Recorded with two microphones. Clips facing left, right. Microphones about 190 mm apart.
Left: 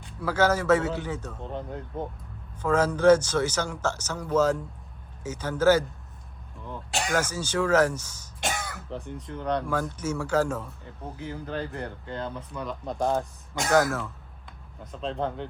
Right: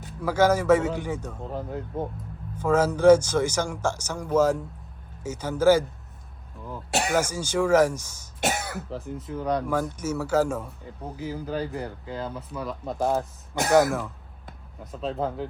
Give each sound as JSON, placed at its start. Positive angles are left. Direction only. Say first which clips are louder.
{"t": 0.2, "sound": "speech", "louder": "right 3 dB", "side_deg": -10}
{"t": 8.4, "sound": "speech", "louder": "right 4 dB", "side_deg": -60}
{"t": 8.9, "sound": "speech", "louder": "right 3 dB", "side_deg": 0}
{"t": 14.9, "sound": "speech", "louder": "right 2 dB", "side_deg": -5}